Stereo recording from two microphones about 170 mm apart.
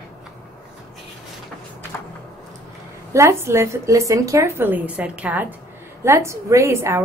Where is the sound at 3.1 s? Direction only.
15° right (ahead or behind).